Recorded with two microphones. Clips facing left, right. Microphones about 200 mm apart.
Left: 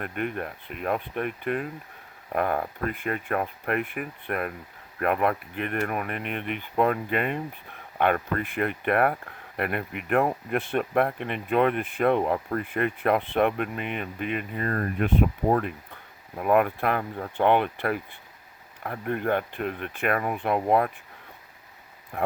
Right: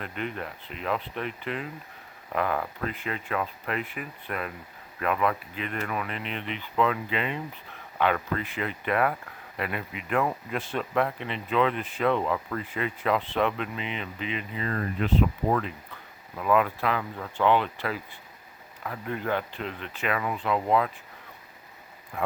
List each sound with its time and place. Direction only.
0.0 s speech: 55° left (ahead or behind)
16.4 s speech: 55° left (ahead or behind)
17.0 s speech: 40° left (ahead or behind)
17.3 s speech: 55° left (ahead or behind)